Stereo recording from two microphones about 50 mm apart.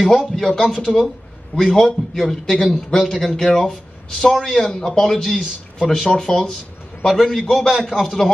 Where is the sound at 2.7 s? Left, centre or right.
Centre.